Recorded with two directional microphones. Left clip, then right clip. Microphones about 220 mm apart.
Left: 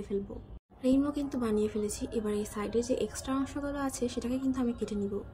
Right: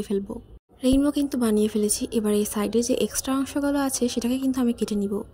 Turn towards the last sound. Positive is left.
turn(degrees=-40)  # may be behind; listen again after turning